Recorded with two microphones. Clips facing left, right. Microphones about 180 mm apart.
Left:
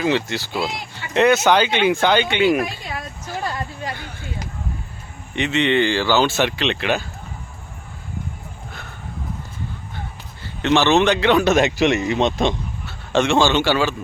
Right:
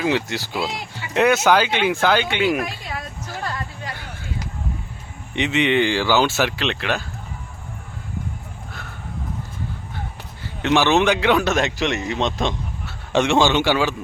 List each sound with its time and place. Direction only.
0.0 s a man's voice: 10° right (ahead or behind)
5.3 s speech: 15° right (ahead or behind); by 7.0 s centre (ahead or behind)
10.6 s a man's voice: 10° right (ahead or behind)
13.1 s speech: 15° right (ahead or behind)